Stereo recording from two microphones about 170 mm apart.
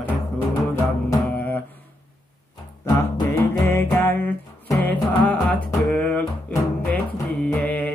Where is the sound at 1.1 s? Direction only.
10° left (ahead or behind).